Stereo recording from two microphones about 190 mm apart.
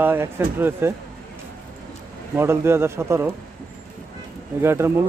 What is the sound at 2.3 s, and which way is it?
Speech, 15° right (ahead or behind).